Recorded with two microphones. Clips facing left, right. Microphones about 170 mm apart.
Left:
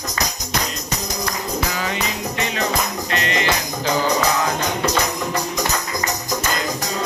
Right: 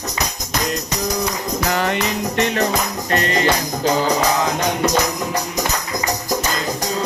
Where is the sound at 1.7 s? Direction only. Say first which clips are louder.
Right 5 dB; 60° right (ahead or behind).